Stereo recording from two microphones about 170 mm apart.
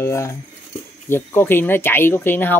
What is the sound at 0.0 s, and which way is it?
Speech, 15° left (ahead or behind).